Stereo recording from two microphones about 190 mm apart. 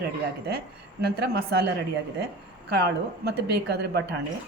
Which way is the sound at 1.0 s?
55° right (ahead or behind).